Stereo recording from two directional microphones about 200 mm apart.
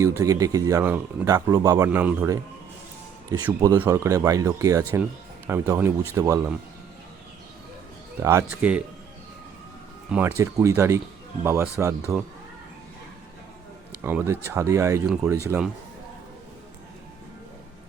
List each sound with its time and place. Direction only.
0.0 s speech: 15° right (ahead or behind)
3.4 s speech: 15° right (ahead or behind)
8.2 s speech: 15° right (ahead or behind)
10.1 s speech: 10° right (ahead or behind)
14.0 s speech: 10° right (ahead or behind)